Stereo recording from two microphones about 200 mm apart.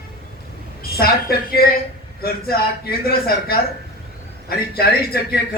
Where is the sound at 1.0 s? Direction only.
50° left (ahead or behind).